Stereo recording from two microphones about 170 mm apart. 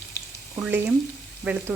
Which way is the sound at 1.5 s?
10° right (ahead or behind).